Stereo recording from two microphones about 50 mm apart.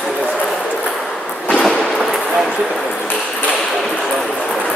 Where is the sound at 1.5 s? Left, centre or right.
Centre.